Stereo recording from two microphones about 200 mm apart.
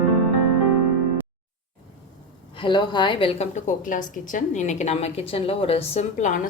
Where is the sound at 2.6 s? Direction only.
20° left (ahead or behind).